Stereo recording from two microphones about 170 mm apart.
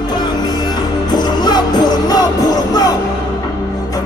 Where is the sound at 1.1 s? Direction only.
25° left (ahead or behind).